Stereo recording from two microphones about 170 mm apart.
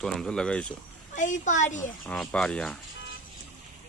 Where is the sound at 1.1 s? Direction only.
50° left (ahead or behind).